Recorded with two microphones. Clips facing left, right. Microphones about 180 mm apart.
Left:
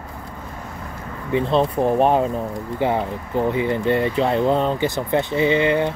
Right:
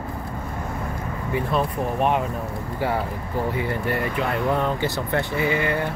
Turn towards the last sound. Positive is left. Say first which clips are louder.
# left 5 dB
turn(degrees=20)  # may be behind; listen again after turning